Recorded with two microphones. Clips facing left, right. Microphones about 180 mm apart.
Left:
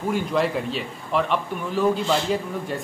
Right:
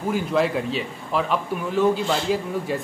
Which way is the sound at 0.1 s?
Centre (ahead or behind).